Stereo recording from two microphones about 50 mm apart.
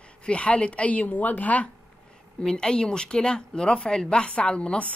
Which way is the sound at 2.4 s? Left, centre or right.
Centre.